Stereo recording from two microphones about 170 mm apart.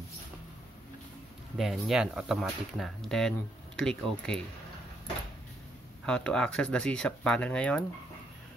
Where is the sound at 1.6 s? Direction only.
Centre (ahead or behind).